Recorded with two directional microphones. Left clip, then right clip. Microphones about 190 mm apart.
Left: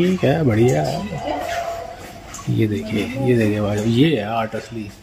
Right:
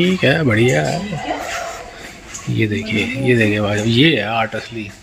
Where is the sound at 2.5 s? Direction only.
5° left (ahead or behind).